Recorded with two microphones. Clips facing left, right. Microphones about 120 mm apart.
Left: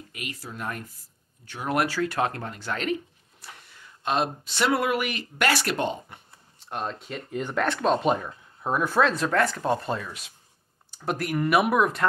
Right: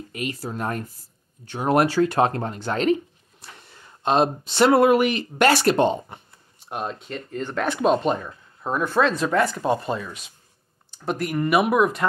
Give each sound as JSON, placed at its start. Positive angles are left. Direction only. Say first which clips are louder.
{"t": 0.1, "sound": "speech", "louder": "right 9 dB", "side_deg": -35}
{"t": 6.6, "sound": "speech", "louder": "right 2 dB", "side_deg": -10}
{"t": 7.0, "sound": "speech", "louder": "right 1 dB", "side_deg": 5}
{"t": 7.5, "sound": "speech", "louder": "right 3 dB", "side_deg": -5}
{"t": 8.0, "sound": "speech", "louder": "right 1 dB", "side_deg": 5}